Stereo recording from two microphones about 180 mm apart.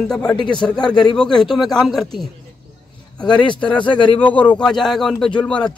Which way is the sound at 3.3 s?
25° left (ahead or behind).